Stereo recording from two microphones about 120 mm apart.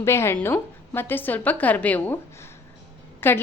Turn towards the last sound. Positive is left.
turn(degrees=15)  # may be behind; listen again after turning